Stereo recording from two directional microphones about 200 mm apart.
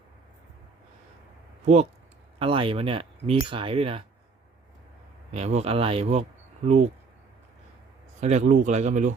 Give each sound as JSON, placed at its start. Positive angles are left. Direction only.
{"t": 1.6, "sound": "speech", "side_deg": -35}
{"t": 5.3, "sound": "speech", "side_deg": -35}
{"t": 8.2, "sound": "speech", "side_deg": -35}